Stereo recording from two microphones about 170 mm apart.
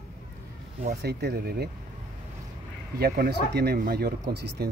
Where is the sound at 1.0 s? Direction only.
65° right (ahead or behind).